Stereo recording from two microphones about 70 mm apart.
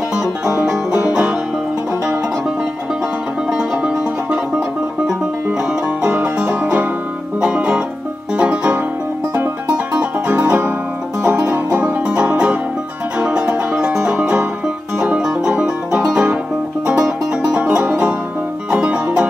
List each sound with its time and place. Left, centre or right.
0.5 s music: centre
3.8 s music: centre
6.1 s music: right
9.9 s music: centre
17.6 s music: centre